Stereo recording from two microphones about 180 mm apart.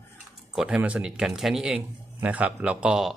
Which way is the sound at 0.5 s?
5° right (ahead or behind).